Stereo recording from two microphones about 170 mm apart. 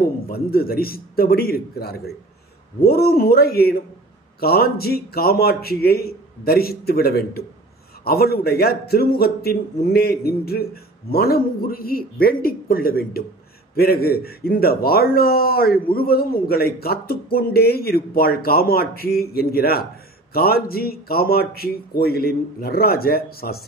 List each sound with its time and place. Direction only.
0.0 s a man's voice: 65° left (ahead or behind)